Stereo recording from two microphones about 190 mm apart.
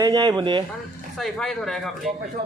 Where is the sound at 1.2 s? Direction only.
Centre (ahead or behind).